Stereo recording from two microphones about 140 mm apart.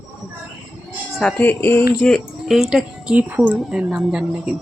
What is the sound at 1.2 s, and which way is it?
Speech, 15° left (ahead or behind).